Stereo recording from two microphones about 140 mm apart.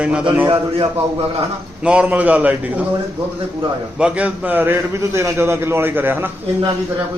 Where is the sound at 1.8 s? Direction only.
5° right (ahead or behind).